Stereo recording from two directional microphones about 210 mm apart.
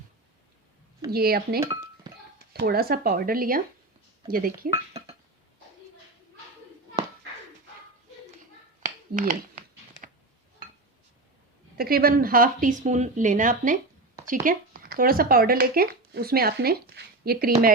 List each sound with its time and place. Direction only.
1.1 s speech: 45° right (ahead or behind)
2.0 s a sound: 20° right (ahead or behind)
2.5 s speech: 50° right (ahead or behind)
9.1 s speech: 40° right (ahead or behind)
11.8 s speech: 45° right (ahead or behind)